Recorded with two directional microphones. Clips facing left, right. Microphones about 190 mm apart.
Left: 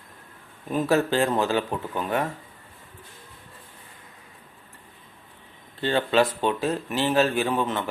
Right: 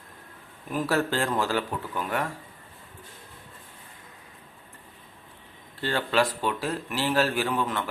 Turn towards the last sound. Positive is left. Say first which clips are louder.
# left 3 dB
turn(degrees=25)  # may be behind; listen again after turning